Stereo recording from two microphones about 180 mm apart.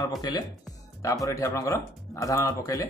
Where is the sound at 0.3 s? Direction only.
20° left (ahead or behind).